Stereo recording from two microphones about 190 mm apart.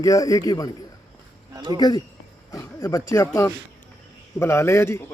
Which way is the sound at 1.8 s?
20° left (ahead or behind).